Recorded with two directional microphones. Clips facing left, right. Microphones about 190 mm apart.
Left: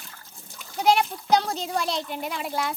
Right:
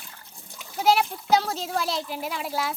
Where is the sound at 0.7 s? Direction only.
5° right (ahead or behind).